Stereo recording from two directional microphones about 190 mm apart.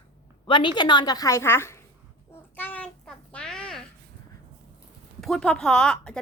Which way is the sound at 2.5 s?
10° left (ahead or behind).